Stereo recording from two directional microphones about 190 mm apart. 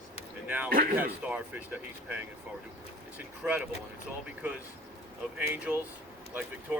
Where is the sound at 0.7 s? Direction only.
50° right (ahead or behind).